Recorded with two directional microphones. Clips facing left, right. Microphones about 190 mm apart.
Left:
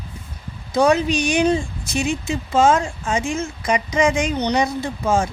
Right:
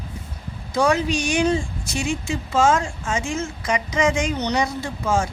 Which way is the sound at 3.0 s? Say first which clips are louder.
Left 3 dB; 35° left (ahead or behind).